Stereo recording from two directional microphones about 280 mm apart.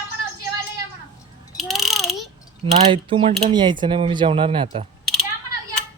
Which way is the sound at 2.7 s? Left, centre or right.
Right.